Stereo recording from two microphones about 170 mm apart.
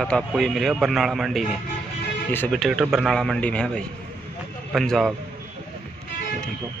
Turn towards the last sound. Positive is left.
turn(degrees=0)  # may be behind; listen again after turning